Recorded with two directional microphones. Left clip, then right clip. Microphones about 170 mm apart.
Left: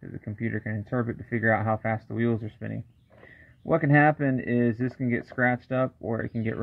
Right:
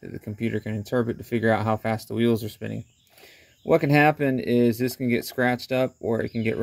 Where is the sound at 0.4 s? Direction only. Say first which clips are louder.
Right 3 dB; 30° right (ahead or behind).